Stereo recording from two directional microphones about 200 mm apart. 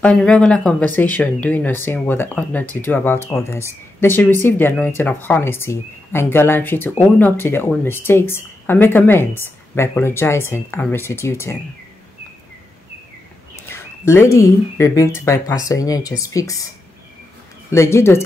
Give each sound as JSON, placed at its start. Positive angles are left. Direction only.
{"t": 0.0, "sound": "speech", "side_deg": 5}
{"t": 13.7, "sound": "speech", "side_deg": 10}
{"t": 17.6, "sound": "speech", "side_deg": 15}